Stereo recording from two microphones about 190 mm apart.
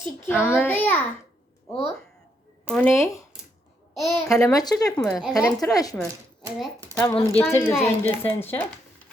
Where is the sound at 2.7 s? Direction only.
5° left (ahead or behind).